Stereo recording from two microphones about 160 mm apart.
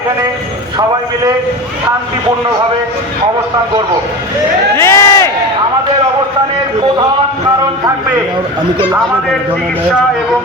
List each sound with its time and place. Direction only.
4.8 s crowd: 15° left (ahead or behind)